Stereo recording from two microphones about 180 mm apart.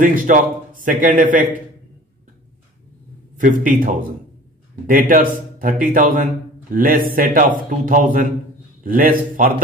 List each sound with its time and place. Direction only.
0.0 s a man's voice: 45° right (ahead or behind)
3.3 s a man's voice: 45° right (ahead or behind)